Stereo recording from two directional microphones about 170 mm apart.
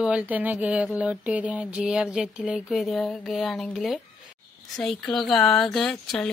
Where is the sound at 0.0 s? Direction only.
5° right (ahead or behind).